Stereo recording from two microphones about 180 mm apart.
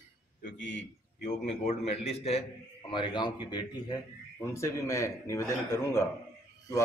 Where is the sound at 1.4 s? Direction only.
35° left (ahead or behind).